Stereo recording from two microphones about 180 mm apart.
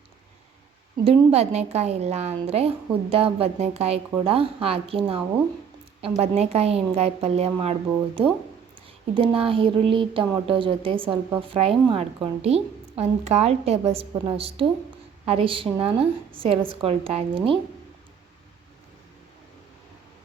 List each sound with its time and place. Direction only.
1.0 s a woman's voice: 35° right (ahead or behind)